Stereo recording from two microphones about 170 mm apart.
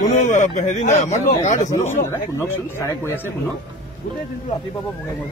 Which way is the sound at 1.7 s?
15° left (ahead or behind).